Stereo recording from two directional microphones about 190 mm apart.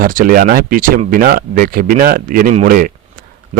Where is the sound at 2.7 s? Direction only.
45° right (ahead or behind).